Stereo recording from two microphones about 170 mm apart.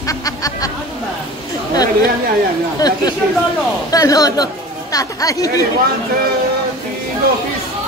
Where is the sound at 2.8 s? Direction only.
25° left (ahead or behind).